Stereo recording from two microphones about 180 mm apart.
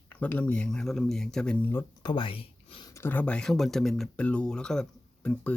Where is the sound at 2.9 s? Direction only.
15° left (ahead or behind).